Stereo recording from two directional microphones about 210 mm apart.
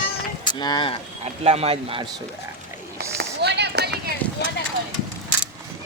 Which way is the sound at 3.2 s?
50° right (ahead or behind).